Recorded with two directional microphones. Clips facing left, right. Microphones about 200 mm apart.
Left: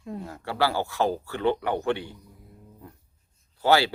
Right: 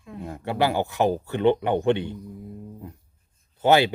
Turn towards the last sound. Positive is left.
turn(degrees=-20)  # may be behind; listen again after turning